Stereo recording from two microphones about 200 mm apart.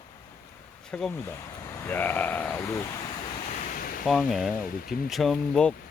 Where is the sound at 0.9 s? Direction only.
5° left (ahead or behind).